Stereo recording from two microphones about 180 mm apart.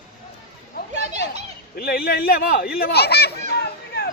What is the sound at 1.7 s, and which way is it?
Speech, 55° left (ahead or behind).